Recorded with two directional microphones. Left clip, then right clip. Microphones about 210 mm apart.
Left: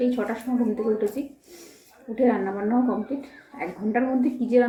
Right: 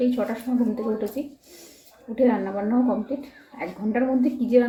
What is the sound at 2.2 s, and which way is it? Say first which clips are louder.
A woman's voice: right 1 dB; centre (ahead or behind).